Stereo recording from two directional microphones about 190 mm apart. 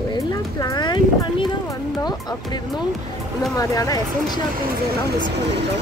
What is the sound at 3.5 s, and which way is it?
Speech, 20° left (ahead or behind).